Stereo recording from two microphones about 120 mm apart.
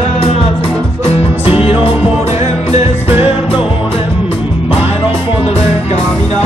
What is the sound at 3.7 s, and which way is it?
Music, 50° left (ahead or behind).